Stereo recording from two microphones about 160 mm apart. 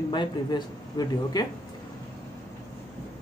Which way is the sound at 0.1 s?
30° left (ahead or behind).